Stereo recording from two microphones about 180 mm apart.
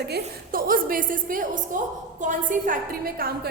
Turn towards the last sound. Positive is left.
turn(degrees=-50)  # may be behind; listen again after turning